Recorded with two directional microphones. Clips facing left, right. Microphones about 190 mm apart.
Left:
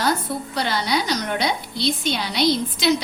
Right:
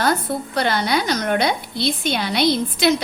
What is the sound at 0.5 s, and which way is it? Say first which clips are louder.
A woman's voice: right 3 dB; 55° right (ahead or behind).